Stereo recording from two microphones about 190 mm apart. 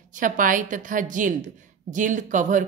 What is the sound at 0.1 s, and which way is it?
A woman's voice, 45° right (ahead or behind).